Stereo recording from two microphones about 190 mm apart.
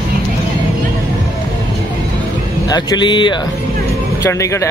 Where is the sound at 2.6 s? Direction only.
20° left (ahead or behind).